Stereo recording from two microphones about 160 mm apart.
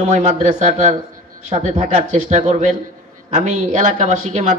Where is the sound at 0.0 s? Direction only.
45° right (ahead or behind).